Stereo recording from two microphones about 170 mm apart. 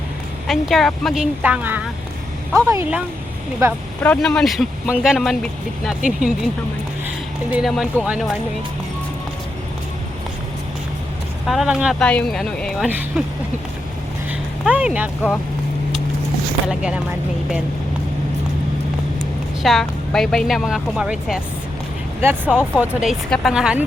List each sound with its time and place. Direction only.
0.4 s speech: centre (ahead or behind); by 3.8 s 15° right (ahead or behind)
4.0 s speech: 5° left (ahead or behind)
7.5 s speech: centre (ahead or behind)
11.4 s speech: centre (ahead or behind)
14.3 s a sound: 10° right (ahead or behind)
16.6 s speech: 5° right (ahead or behind)
19.6 s speech: centre (ahead or behind)